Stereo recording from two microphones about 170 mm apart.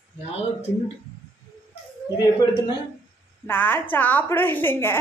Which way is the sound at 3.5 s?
10° left (ahead or behind).